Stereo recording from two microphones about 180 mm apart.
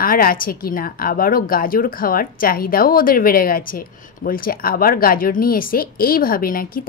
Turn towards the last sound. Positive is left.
turn(degrees=50)  # may be behind; listen again after turning